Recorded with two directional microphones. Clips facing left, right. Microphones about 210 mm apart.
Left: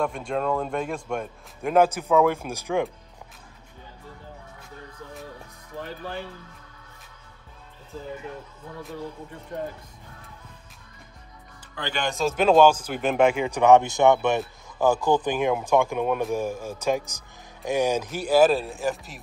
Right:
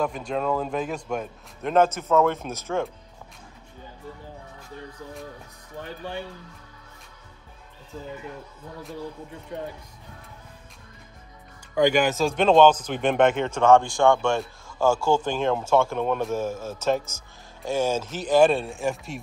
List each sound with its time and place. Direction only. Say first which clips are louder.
0.3 s speech: even; 5° right (ahead or behind)
1.6 s a man's voice: left 1 dB; 10° left (ahead or behind)
11.8 s a man's voice: right 6 dB; 10° right (ahead or behind)